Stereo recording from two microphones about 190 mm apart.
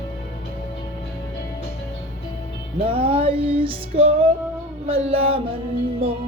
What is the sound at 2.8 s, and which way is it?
Music, 30° right (ahead or behind).